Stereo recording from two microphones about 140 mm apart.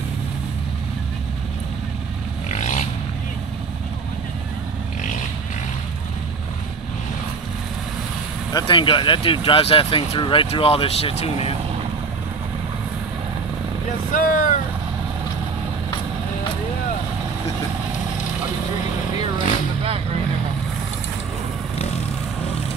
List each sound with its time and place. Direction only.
2.5 s a sound: 60° left (ahead or behind)
8.5 s speech: 35° left (ahead or behind)
14.1 s speech: 70° left (ahead or behind)